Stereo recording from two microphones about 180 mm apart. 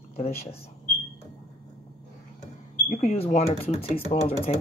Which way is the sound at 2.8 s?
45° left (ahead or behind).